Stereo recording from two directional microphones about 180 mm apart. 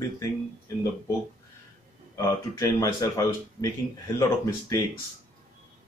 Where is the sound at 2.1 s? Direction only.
15° left (ahead or behind).